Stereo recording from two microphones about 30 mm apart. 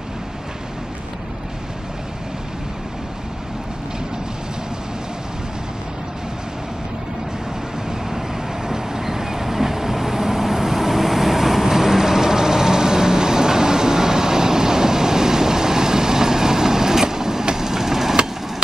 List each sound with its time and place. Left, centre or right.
8.6 s vehicle: centre